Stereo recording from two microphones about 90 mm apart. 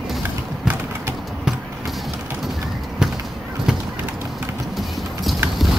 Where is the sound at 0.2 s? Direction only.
25° right (ahead or behind).